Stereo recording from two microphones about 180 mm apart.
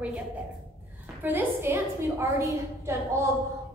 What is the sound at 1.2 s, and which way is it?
A woman's voice, 10° right (ahead or behind).